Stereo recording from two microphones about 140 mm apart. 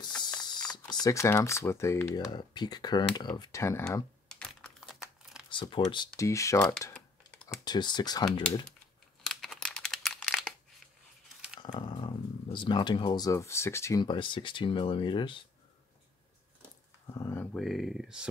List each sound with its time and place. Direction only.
0.4 s speech: 30° left (ahead or behind)
2.1 s speech: 30° left (ahead or behind)
4.3 s computer keyboard: 5° left (ahead or behind)
5.5 s speech: 35° left (ahead or behind)
6.1 s speech: 20° left (ahead or behind)
7.6 s speech: 30° left (ahead or behind)
8.3 s speech: 5° left (ahead or behind)
9.2 s crumpling: 5° left (ahead or behind)
11.6 s speech: 30° left (ahead or behind)
14.0 s speech: 35° left (ahead or behind)
17.1 s speech: 20° left (ahead or behind)
17.6 s speech: centre (ahead or behind)